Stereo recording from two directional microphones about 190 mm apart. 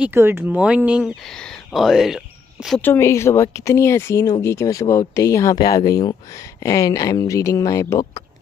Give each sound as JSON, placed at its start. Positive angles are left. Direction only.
{"t": 0.0, "sound": "speech", "side_deg": -15}
{"t": 2.8, "sound": "speech", "side_deg": 15}